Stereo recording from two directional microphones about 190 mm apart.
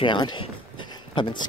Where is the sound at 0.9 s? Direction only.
25° left (ahead or behind).